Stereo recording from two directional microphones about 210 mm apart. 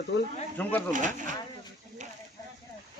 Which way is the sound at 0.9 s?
35° right (ahead or behind).